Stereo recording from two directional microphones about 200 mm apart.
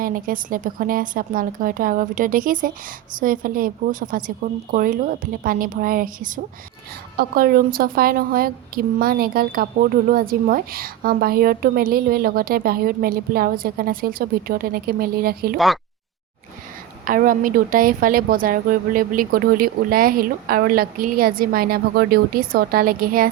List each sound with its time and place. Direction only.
0.0 s a woman's voice: 45° right (ahead or behind)
15.5 s speech: centre (ahead or behind)
17.1 s a woman's voice: 40° right (ahead or behind)